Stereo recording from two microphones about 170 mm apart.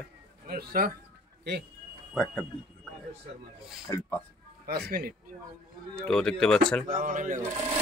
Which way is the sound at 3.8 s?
15° left (ahead or behind).